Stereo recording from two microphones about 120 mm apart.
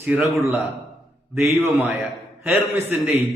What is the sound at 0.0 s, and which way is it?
A man's voice, 15° right (ahead or behind).